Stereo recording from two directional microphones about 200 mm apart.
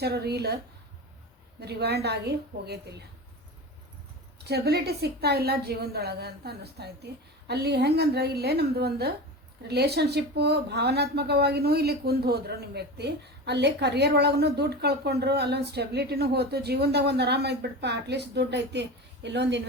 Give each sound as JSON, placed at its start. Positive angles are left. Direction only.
{"t": 0.0, "sound": "a woman's voice", "side_deg": -55}
{"t": 1.6, "sound": "speech", "side_deg": -55}
{"t": 4.4, "sound": "a woman's voice", "side_deg": -55}